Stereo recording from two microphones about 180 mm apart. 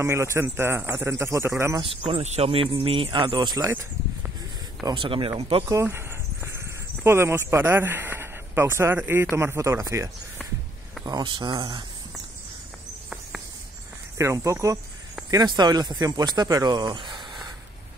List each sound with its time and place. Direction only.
0.0 s speech: 15° right (ahead or behind)
1.8 s speech: 30° right (ahead or behind)
4.8 s speech: 30° right (ahead or behind)
5.7 s a sound: 15° right (ahead or behind)
7.0 s speech: 15° right (ahead or behind)
11.1 s speech: 25° right (ahead or behind)
14.1 s speech: 15° right (ahead or behind)